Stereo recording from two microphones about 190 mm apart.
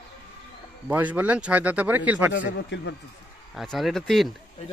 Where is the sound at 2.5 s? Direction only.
70° left (ahead or behind).